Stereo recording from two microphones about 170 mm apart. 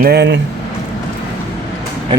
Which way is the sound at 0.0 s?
75° right (ahead or behind).